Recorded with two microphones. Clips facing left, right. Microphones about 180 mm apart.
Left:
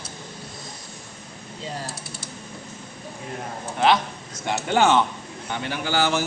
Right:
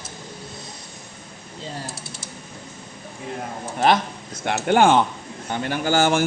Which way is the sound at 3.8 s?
50° right (ahead or behind).